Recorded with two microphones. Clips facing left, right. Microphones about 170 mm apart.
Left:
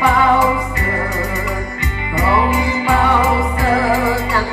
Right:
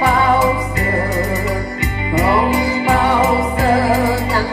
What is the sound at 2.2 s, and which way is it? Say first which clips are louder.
Music: right 1 dB; 40° right (ahead or behind).